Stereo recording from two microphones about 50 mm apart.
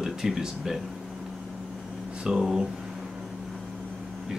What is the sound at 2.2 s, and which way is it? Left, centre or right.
Speech, centre.